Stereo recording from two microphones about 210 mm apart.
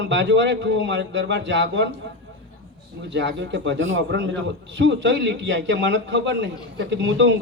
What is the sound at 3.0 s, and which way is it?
A man's voice, 60° right (ahead or behind).